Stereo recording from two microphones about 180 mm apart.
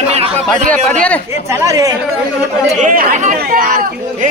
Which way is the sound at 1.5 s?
15° right (ahead or behind).